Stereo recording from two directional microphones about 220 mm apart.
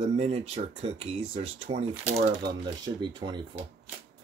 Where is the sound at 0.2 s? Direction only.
30° right (ahead or behind).